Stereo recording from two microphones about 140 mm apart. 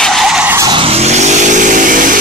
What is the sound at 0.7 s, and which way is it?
Vehicle, 45° right (ahead or behind).